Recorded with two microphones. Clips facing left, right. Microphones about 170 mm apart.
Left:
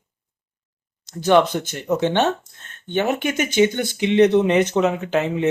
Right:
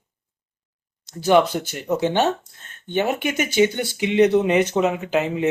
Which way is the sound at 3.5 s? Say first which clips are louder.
Left 1 dB; 10° right (ahead or behind).